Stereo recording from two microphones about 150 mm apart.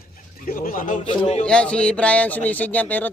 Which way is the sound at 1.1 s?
40° left (ahead or behind).